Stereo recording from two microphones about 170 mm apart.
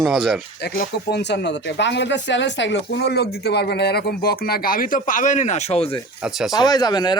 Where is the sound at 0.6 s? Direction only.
65° left (ahead or behind); by 6.0 s 35° left (ahead or behind).